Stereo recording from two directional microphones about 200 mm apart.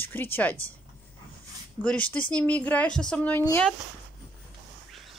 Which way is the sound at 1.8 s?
5° left (ahead or behind).